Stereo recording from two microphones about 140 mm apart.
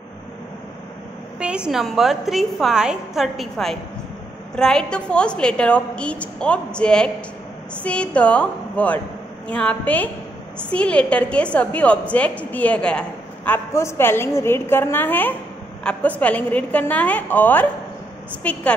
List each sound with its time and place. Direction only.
1.4 s a woman's voice: 5° right (ahead or behind)
13.5 s a woman's voice: 20° left (ahead or behind)